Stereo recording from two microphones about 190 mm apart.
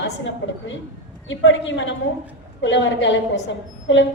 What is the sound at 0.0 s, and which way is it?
A woman's voice, 75° left (ahead or behind).